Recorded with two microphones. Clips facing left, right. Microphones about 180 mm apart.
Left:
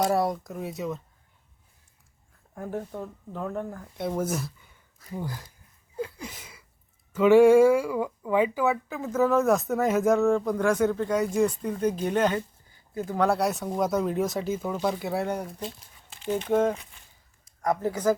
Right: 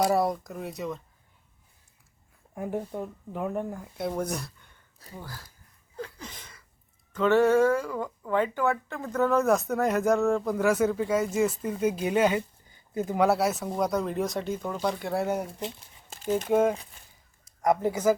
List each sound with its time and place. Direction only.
0.0 s speech: centre (ahead or behind)
2.6 s speech: 15° right (ahead or behind)
3.9 s speech: centre (ahead or behind)
5.1 s speech: 20° left (ahead or behind)
6.0 s a sound: 10° left (ahead or behind)
7.1 s speech: 10° left (ahead or behind); by 12.4 s 10° right (ahead or behind)
12.9 s speech: 20° right (ahead or behind)
16.0 s a sound: 40° right (ahead or behind)
16.5 s speech: 10° right (ahead or behind)